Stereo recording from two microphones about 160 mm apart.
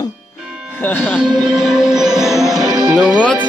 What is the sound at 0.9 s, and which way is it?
Speech, 15° left (ahead or behind).